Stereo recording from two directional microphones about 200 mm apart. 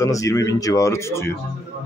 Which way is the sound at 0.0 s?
15° left (ahead or behind).